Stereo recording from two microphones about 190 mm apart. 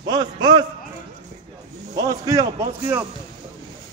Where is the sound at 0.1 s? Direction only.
20° right (ahead or behind).